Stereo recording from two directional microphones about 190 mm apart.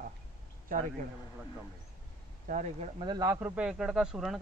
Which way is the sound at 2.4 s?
40° right (ahead or behind).